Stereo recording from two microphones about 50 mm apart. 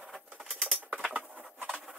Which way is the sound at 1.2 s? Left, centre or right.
Right.